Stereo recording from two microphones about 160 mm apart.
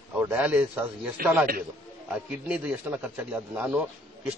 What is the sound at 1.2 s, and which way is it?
Speech, 65° right (ahead or behind).